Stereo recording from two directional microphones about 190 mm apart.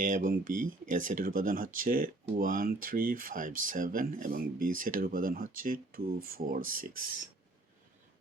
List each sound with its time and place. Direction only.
0.0 s speech: 45° right (ahead or behind)